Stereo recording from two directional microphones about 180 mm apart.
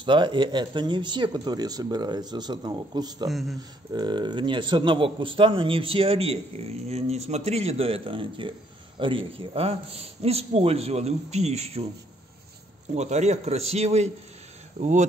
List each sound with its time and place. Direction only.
0.0 s speech: 25° right (ahead or behind)
3.3 s speech: centre (ahead or behind)
3.5 s speech: 25° right (ahead or behind)
12.9 s speech: 40° right (ahead or behind)